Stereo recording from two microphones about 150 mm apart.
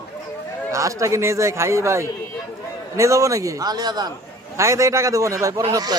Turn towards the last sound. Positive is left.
turn(degrees=-25)  # may be behind; listen again after turning